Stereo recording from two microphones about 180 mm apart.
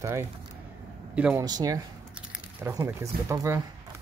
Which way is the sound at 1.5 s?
20° right (ahead or behind).